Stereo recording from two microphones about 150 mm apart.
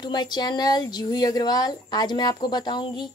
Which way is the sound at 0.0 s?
30° left (ahead or behind).